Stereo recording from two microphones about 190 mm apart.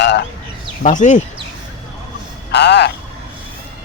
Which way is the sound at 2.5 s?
60° left (ahead or behind).